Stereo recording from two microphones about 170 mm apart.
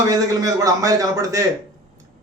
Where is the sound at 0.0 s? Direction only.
20° right (ahead or behind).